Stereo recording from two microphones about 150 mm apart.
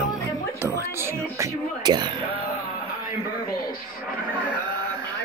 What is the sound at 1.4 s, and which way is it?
Music, 25° right (ahead or behind).